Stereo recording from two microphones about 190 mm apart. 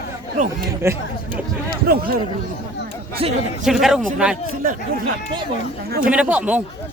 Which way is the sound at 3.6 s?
Centre (ahead or behind).